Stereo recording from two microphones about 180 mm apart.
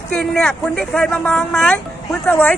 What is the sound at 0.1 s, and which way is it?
Speech, 5° left (ahead or behind).